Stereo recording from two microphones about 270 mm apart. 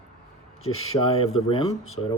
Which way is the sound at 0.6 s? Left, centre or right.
Left.